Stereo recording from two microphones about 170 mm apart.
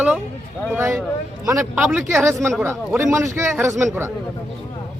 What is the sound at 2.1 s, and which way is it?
Speech, 15° right (ahead or behind).